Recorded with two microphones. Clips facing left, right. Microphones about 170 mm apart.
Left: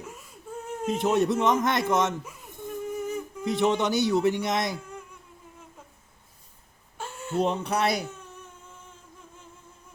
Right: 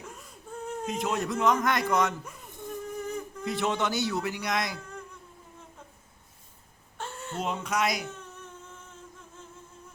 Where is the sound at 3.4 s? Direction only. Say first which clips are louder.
Left 5 dB; 20° left (ahead or behind).